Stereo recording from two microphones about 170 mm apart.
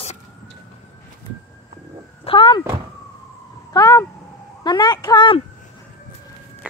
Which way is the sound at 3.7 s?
20° left (ahead or behind).